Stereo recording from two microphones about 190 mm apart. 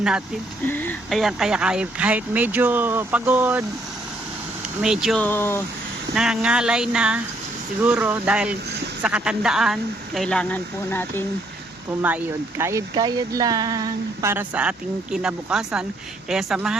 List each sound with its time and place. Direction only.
0.7 s speech: 10° left (ahead or behind)
1.2 s speech: centre (ahead or behind)
4.8 s speech: 5° right (ahead or behind)
5.2 s speech: 10° left (ahead or behind)
6.1 s speech: 5° right (ahead or behind)
12.0 s speech: 10° right (ahead or behind)